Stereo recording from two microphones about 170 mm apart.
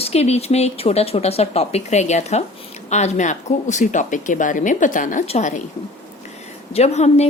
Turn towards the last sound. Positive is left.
turn(degrees=40)  # may be behind; listen again after turning